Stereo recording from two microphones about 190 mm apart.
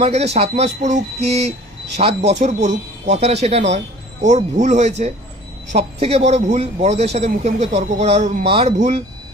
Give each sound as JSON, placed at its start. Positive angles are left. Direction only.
{"t": 0.0, "sound": "a man's voice", "side_deg": -35}